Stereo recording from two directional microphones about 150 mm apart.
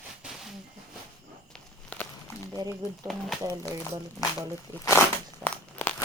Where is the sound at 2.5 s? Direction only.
25° right (ahead or behind).